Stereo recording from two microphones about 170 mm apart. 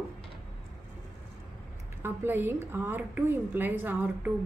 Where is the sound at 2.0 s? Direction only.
15° right (ahead or behind).